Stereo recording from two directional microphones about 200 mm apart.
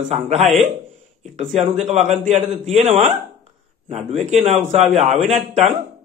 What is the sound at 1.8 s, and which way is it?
A man's voice, 35° right (ahead or behind).